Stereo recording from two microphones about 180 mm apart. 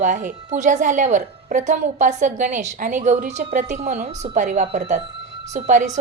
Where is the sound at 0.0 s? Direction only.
45° right (ahead or behind).